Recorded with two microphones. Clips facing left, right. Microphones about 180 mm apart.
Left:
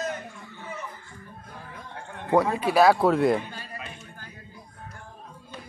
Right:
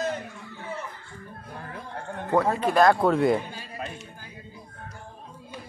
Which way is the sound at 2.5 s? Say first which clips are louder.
Right 1 dB; 5° left (ahead or behind).